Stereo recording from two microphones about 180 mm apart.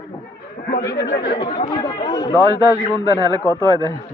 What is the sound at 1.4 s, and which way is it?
A man's voice, 25° left (ahead or behind).